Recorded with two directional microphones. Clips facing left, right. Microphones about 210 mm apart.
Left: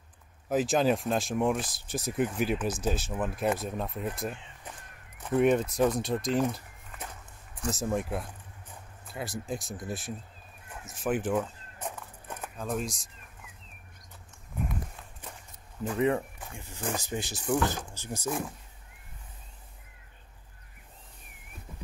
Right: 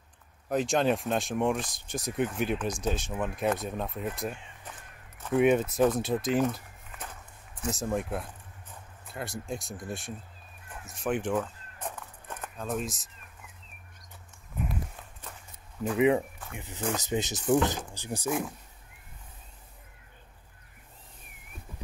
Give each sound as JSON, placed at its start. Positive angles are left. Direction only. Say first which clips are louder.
{"t": 0.5, "sound": "speech", "louder": "left 1 dB", "side_deg": 5}
{"t": 5.3, "sound": "speech", "louder": "right 1 dB", "side_deg": 0}
{"t": 10.9, "sound": "walk", "louder": "left 1 dB", "side_deg": 5}
{"t": 12.5, "sound": "speech", "louder": "even", "side_deg": 0}
{"t": 16.0, "sound": "speech", "louder": "right 3 dB", "side_deg": -15}